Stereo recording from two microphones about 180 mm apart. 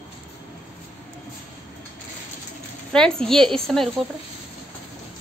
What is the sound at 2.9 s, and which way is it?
A woman's voice, 5° left (ahead or behind).